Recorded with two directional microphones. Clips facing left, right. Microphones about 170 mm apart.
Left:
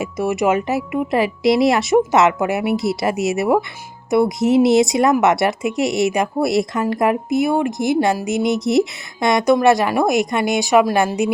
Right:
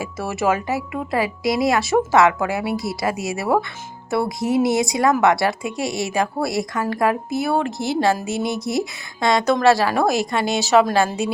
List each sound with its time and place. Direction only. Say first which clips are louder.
0.0 s speech: left 4 dB; 15° left (ahead or behind)